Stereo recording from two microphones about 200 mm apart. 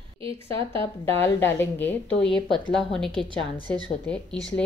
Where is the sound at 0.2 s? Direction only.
25° right (ahead or behind).